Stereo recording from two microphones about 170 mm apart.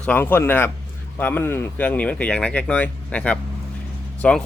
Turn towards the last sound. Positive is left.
turn(degrees=5)  # may be behind; listen again after turning